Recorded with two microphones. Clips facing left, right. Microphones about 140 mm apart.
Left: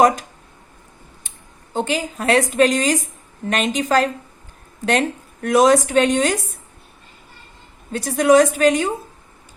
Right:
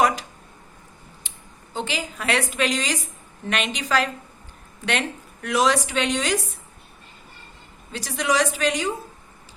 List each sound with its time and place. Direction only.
1.7 s a woman's voice: 45° left (ahead or behind)
7.9 s a woman's voice: 50° left (ahead or behind)